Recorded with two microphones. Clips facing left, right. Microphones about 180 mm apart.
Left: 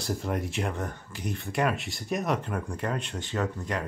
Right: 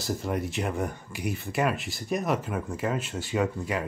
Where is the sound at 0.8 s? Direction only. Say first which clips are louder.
Right 4 dB; 10° right (ahead or behind).